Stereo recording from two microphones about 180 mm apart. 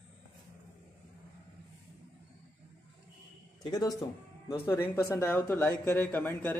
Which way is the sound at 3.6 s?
20° left (ahead or behind).